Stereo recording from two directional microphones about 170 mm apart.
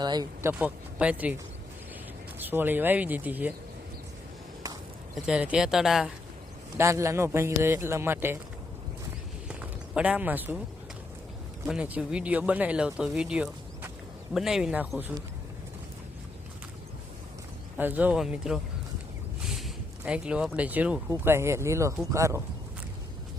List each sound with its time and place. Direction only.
0.0 s speech: 25° right (ahead or behind)
0.6 s speech: 10° right (ahead or behind)
2.4 s speech: 10° right (ahead or behind)
5.1 s speech: 5° right (ahead or behind)
6.7 s speech: 15° right (ahead or behind)
9.5 s a sound: 5° right (ahead or behind)
11.6 s speech: 10° right (ahead or behind)
17.7 s speech: 10° right (ahead or behind)